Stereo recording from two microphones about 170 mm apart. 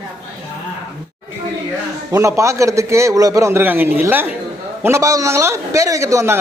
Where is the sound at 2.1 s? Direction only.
15° right (ahead or behind).